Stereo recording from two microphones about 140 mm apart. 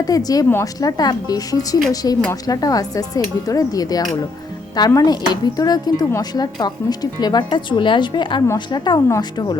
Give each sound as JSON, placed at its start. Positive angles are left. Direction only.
{"t": 0.0, "sound": "a woman's voice", "side_deg": 25}